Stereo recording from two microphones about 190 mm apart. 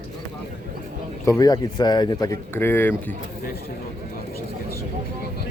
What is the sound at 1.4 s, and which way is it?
Speech, 20° left (ahead or behind).